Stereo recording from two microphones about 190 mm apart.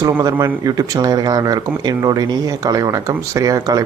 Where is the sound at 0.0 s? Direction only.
20° right (ahead or behind).